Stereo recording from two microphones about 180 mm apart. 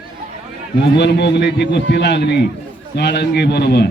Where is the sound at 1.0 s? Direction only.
70° left (ahead or behind).